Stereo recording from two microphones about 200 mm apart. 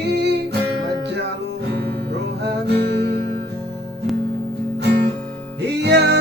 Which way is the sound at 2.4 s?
55° right (ahead or behind).